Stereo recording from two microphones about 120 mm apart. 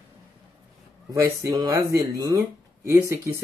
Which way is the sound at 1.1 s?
25° right (ahead or behind).